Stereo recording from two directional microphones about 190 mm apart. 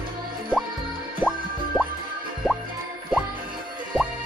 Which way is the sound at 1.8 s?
5° right (ahead or behind).